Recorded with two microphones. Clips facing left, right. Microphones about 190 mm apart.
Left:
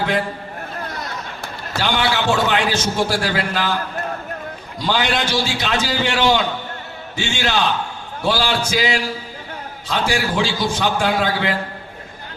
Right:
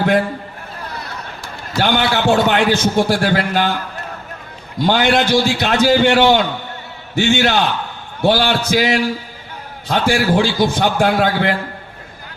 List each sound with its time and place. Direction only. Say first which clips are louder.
1.8 s a man's voice: right 4 dB; 55° right (ahead or behind)
4.8 s a man's voice: right 6 dB; 55° right (ahead or behind)
9.9 s a man's voice: right 5 dB; 55° right (ahead or behind)